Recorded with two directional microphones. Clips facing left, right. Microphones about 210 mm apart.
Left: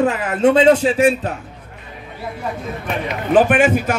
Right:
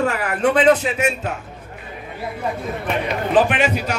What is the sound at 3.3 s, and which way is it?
Speech, 50° left (ahead or behind).